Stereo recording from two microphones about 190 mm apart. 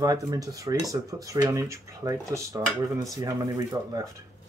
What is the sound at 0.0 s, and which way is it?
Speech, 20° right (ahead or behind).